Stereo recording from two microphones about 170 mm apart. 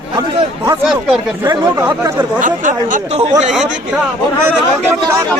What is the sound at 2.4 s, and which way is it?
Speech, 50° right (ahead or behind).